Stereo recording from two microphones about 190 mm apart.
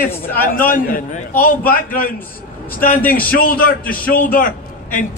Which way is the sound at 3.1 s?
50° left (ahead or behind).